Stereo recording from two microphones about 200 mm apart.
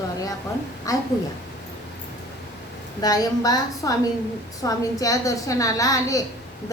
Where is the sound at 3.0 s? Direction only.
20° left (ahead or behind).